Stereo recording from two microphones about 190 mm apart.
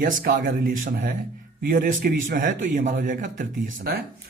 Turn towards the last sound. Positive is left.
turn(degrees=-45)  # may be behind; listen again after turning